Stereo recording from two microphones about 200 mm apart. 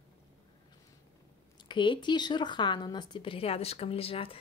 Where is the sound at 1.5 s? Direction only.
25° left (ahead or behind).